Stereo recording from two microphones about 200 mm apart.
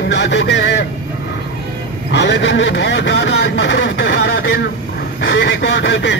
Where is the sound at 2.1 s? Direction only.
60° left (ahead or behind).